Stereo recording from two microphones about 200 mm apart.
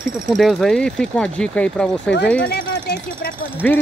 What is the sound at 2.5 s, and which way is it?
Speech, 55° left (ahead or behind).